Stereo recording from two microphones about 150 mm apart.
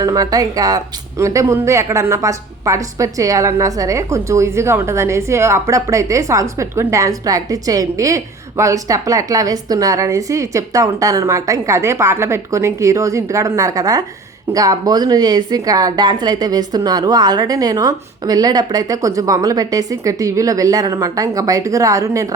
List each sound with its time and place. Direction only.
0.0 s a woman's voice: 25° right (ahead or behind)